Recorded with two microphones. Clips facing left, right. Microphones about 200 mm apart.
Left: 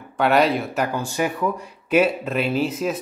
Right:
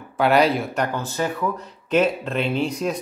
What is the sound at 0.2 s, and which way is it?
Speech, centre (ahead or behind).